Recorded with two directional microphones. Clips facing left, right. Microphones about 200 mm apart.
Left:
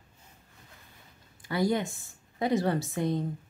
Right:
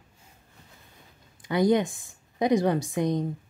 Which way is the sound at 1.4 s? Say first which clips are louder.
Right 5 dB; 20° right (ahead or behind).